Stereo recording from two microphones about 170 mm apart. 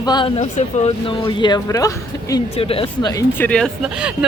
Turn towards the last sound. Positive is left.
turn(degrees=-5)  # may be behind; listen again after turning